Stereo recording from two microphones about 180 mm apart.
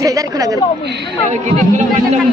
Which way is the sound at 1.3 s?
40° right (ahead or behind).